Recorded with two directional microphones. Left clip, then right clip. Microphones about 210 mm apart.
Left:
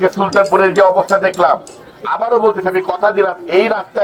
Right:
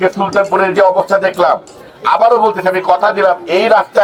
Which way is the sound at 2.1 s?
45° right (ahead or behind).